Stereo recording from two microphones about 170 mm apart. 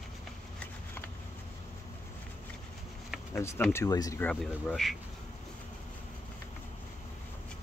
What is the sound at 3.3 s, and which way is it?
Speech, 15° left (ahead or behind).